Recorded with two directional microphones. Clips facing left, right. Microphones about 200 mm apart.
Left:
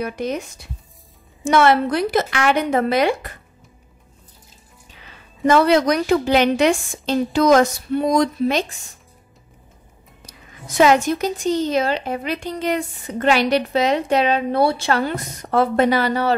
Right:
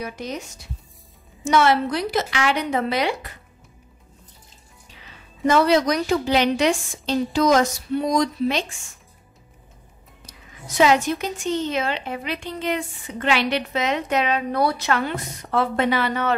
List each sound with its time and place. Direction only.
0.0 s a woman's voice: 55° left (ahead or behind)
5.5 s a woman's voice: 55° left (ahead or behind); by 8.9 s 40° left (ahead or behind)
10.2 s a woman's voice: 50° left (ahead or behind); by 16.3 s 35° left (ahead or behind)